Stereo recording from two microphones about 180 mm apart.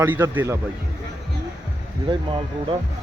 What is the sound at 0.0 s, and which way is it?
Speech, 10° right (ahead or behind).